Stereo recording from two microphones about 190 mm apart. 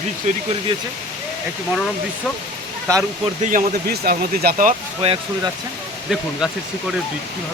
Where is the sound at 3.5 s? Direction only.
50° right (ahead or behind).